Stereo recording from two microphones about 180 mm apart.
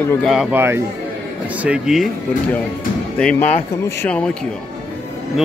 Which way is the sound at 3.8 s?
10° left (ahead or behind).